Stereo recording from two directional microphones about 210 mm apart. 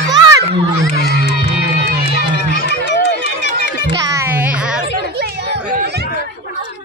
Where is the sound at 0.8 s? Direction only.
50° left (ahead or behind).